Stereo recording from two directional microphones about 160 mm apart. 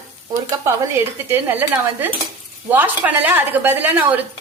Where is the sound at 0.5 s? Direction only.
20° right (ahead or behind).